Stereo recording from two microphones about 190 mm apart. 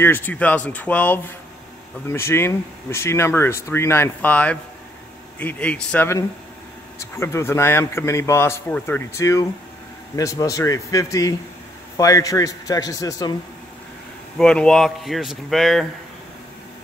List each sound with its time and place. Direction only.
0.0 s a man's voice: 10° left (ahead or behind)
14.4 s speech: 5° left (ahead or behind)